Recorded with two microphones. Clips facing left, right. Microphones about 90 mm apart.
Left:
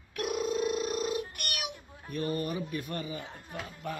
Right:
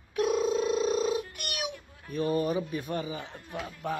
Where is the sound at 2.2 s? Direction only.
25° right (ahead or behind).